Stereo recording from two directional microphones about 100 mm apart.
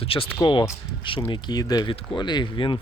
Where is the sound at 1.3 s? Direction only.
45° left (ahead or behind).